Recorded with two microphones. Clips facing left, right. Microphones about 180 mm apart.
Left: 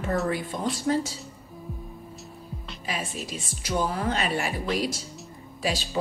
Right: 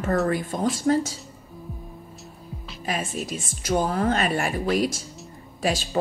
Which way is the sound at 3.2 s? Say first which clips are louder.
Right 5 dB; 45° right (ahead or behind).